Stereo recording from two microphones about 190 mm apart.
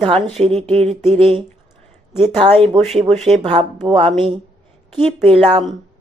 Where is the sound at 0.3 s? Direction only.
30° right (ahead or behind).